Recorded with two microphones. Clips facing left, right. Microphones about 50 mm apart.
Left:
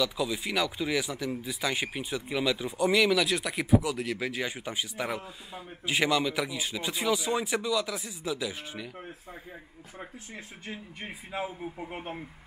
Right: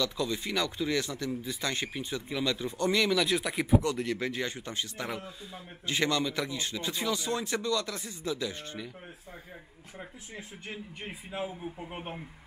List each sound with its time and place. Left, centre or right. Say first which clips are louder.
0.0 s speech: left 2 dB; centre
9.9 s speech: left 1 dB; left